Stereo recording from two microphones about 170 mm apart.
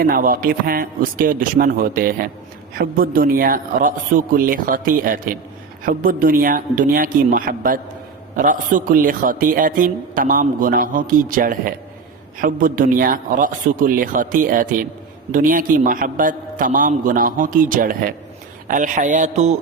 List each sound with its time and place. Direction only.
0.0 s a man's voice: 60° right (ahead or behind)